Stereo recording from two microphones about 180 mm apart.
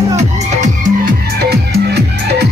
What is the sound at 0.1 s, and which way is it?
Music, 40° right (ahead or behind).